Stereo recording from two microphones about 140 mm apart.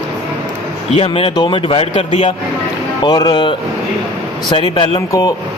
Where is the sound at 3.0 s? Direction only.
30° left (ahead or behind).